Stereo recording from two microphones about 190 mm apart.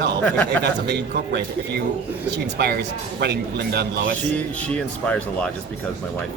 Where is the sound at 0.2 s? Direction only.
10° left (ahead or behind).